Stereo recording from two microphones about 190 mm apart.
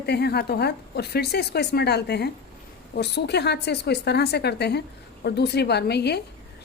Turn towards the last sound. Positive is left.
turn(degrees=60)  # may be behind; listen again after turning